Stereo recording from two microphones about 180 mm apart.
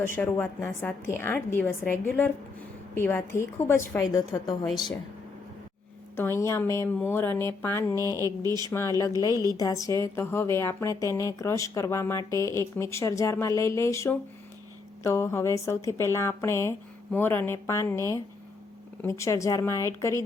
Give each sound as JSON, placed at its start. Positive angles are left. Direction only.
{"t": 0.2, "sound": "a woman's voice", "side_deg": 10}
{"t": 6.1, "sound": "a woman's voice", "side_deg": 15}
{"t": 8.1, "sound": "a woman's voice", "side_deg": -20}
{"t": 9.6, "sound": "a woman's voice", "side_deg": 20}